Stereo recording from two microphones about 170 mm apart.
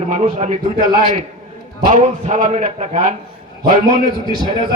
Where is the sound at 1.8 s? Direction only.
50° right (ahead or behind).